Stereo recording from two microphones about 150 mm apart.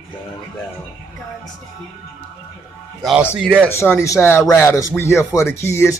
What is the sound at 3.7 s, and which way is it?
Speech, 15° left (ahead or behind).